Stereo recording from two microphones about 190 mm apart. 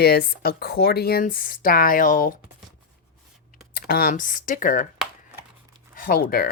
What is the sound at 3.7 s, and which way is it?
A woman's voice, 55° left (ahead or behind).